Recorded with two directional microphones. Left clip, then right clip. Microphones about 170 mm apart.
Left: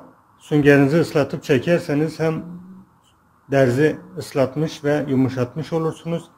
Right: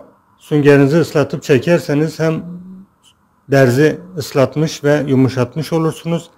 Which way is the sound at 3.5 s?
30° right (ahead or behind).